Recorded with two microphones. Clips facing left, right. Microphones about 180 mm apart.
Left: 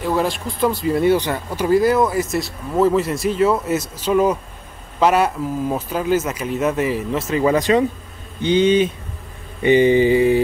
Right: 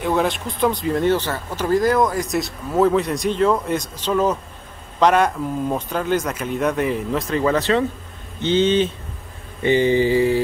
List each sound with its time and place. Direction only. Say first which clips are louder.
0.0 s speech: even; centre (ahead or behind)
8.4 s mantra: left 2 dB; 10° left (ahead or behind)